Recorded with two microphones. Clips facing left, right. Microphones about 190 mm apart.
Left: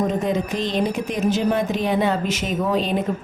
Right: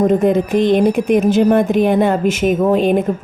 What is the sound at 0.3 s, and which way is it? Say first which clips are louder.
A woman's voice: right 10 dB; 55° right (ahead or behind).